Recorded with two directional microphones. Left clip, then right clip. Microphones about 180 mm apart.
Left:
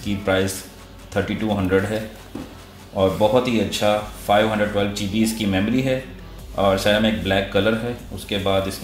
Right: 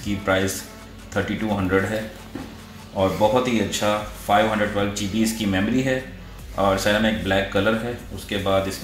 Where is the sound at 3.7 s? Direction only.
30° left (ahead or behind).